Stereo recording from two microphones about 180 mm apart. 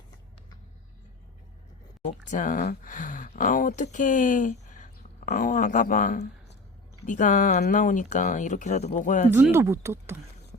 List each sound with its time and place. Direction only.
2.0 s speech: 45° left (ahead or behind)
9.3 s speech: 15° right (ahead or behind)